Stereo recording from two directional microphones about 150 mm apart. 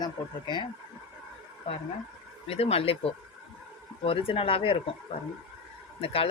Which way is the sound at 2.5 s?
40° left (ahead or behind).